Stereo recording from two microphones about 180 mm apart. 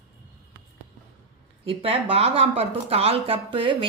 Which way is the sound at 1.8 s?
30° right (ahead or behind).